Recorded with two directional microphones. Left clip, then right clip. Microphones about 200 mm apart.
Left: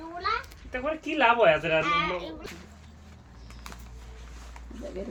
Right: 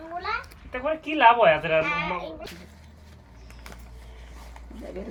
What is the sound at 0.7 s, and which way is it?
Speech, 35° left (ahead or behind).